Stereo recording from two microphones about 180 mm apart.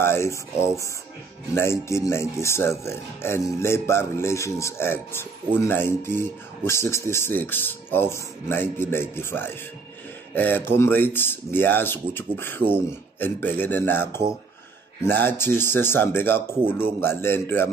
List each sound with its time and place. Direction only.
0.0 s speech: 15° left (ahead or behind)